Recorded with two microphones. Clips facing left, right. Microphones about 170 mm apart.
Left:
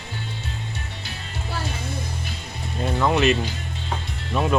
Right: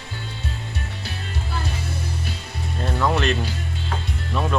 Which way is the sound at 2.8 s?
5° left (ahead or behind).